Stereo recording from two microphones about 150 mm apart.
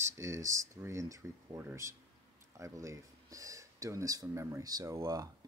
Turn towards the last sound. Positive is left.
turn(degrees=-25)  # may be behind; listen again after turning